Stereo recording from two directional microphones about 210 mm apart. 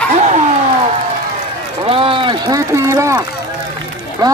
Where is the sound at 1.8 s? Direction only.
25° right (ahead or behind).